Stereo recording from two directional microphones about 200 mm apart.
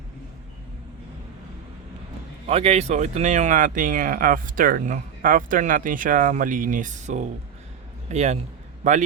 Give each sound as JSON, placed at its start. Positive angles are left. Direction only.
{"t": 2.5, "sound": "a man's voice", "side_deg": -30}